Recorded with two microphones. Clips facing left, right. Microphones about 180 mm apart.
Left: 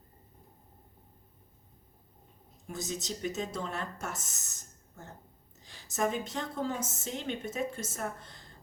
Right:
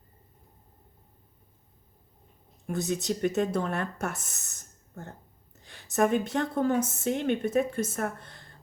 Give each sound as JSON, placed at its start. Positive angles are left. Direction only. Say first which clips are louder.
{"t": 2.6, "sound": "a woman's voice", "louder": "right 8 dB", "side_deg": -60}